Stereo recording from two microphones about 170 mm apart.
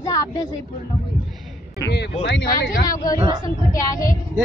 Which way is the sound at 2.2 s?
90° left.